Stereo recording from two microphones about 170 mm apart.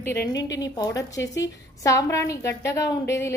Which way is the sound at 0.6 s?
20° left (ahead or behind).